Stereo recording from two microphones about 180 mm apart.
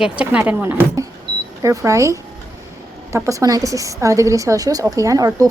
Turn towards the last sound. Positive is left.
turn(degrees=-20)  # may be behind; listen again after turning